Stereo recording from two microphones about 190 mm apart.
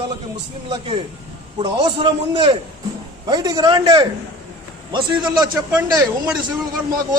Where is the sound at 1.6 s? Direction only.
25° right (ahead or behind).